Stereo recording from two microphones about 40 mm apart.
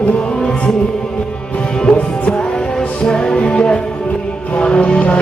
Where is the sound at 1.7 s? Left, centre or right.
Centre.